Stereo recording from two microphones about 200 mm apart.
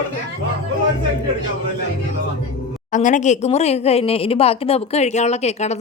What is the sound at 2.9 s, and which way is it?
A woman's voice, 40° left (ahead or behind).